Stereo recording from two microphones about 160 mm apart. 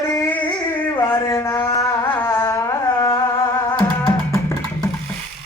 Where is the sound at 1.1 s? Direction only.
15° left (ahead or behind).